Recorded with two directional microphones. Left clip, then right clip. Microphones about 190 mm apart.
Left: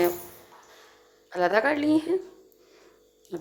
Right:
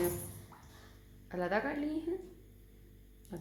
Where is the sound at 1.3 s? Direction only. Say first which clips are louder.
Left 12 dB; 55° left (ahead or behind).